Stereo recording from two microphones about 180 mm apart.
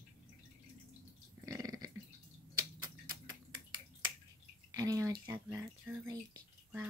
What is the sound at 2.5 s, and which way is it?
Finger snapping, 25° right (ahead or behind).